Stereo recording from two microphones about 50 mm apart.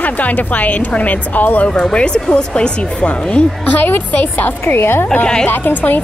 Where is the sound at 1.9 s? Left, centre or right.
Centre.